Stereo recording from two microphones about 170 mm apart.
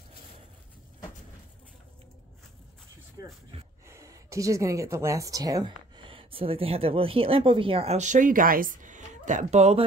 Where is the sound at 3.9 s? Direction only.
15° right (ahead or behind).